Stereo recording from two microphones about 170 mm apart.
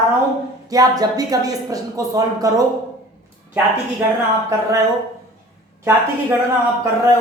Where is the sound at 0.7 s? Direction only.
20° right (ahead or behind).